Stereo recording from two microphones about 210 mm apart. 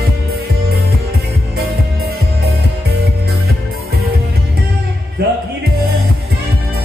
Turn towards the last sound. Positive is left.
turn(degrees=-50)  # may be behind; listen again after turning